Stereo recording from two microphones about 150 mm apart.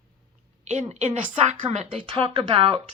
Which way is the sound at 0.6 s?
50° right (ahead or behind).